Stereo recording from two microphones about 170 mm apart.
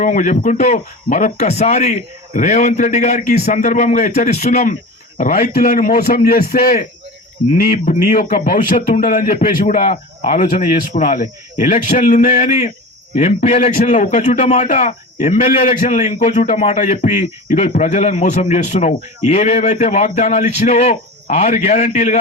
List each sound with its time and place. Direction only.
0.0 s a man's voice: 50° left (ahead or behind)